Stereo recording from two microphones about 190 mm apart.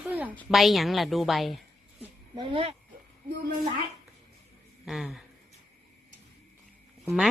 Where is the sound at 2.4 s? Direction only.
25° right (ahead or behind).